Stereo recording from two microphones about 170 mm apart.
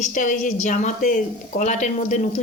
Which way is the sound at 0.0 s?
50° left (ahead or behind).